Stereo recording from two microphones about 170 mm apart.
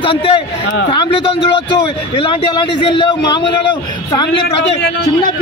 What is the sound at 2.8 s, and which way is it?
Speech, 30° left (ahead or behind).